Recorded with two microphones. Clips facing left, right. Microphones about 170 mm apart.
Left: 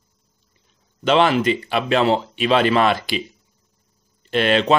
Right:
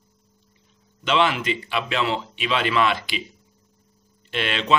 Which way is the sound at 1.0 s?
40° left (ahead or behind).